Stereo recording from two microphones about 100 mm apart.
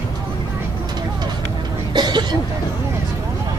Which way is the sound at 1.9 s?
45° right (ahead or behind).